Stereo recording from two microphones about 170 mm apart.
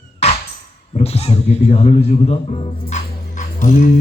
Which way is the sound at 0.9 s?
35° left (ahead or behind).